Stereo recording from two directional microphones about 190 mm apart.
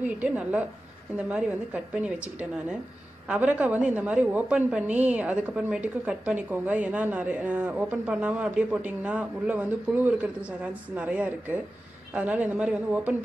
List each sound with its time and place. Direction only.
0.0 s a woman's voice: 5° right (ahead or behind)